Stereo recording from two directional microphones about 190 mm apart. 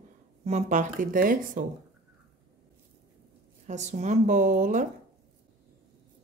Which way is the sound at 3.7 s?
40° right (ahead or behind).